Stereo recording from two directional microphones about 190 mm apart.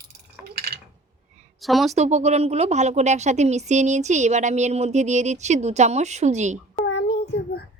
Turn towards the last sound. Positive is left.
turn(degrees=70)  # may be behind; listen again after turning